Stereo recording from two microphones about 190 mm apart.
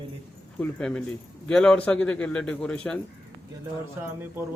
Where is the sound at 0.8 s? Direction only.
5° left (ahead or behind).